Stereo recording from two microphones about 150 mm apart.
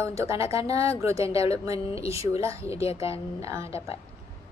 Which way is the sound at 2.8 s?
40° left (ahead or behind).